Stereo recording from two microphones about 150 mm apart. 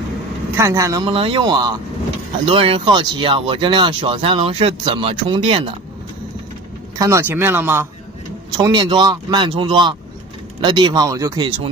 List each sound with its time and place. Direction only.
0.6 s speech: 20° right (ahead or behind)
1.0 s speech: 35° right (ahead or behind)
2.4 s speech: 40° right (ahead or behind)
7.0 s speech: 20° right (ahead or behind)
8.5 s speech: 30° right (ahead or behind)